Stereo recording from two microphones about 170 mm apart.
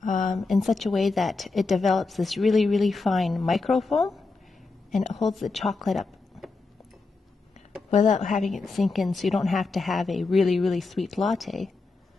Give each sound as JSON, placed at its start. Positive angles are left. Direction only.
{"t": 0.0, "sound": "a sound", "side_deg": 50}
{"t": 0.3, "sound": "a woman's voice", "side_deg": 0}
{"t": 7.9, "sound": "a woman's voice", "side_deg": 45}
{"t": 8.4, "sound": "a woman's voice", "side_deg": 0}